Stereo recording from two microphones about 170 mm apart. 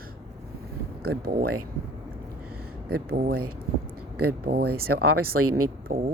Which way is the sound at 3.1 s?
60° right (ahead or behind).